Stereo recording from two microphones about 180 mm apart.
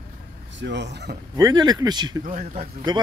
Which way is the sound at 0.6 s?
75° right (ahead or behind).